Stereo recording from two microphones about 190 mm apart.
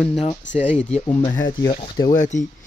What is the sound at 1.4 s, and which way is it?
Speech, 20° left (ahead or behind).